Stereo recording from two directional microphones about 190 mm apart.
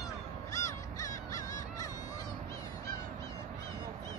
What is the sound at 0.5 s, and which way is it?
Honk, 15° left (ahead or behind).